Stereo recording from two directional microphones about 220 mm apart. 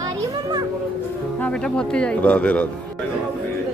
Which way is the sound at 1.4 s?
5° left (ahead or behind).